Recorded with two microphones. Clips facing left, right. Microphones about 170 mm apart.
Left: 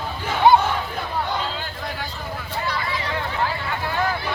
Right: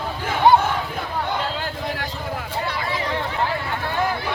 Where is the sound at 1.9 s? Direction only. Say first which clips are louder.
Right 3 dB; 90° right.